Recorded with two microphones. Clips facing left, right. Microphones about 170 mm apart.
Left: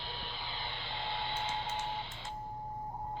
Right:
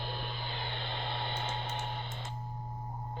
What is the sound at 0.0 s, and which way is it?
Music, 50° right (ahead or behind).